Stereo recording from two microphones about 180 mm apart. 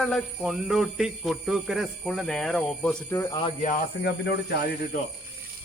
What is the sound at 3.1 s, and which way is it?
Speech, 15° left (ahead or behind).